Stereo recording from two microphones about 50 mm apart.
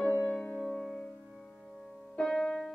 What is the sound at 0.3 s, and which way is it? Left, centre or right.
Music, left.